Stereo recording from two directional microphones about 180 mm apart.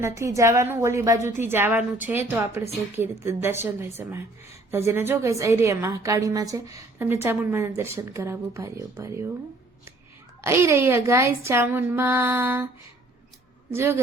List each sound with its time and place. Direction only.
0.0 s a woman's voice: 15° right (ahead or behind)
10.4 s a woman's voice: 15° right (ahead or behind)
13.7 s a woman's voice: 15° right (ahead or behind)